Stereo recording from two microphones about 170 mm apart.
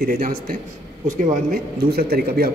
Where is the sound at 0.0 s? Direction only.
55° right (ahead or behind).